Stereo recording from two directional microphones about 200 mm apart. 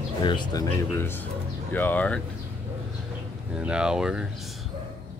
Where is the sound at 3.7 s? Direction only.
5° right (ahead or behind).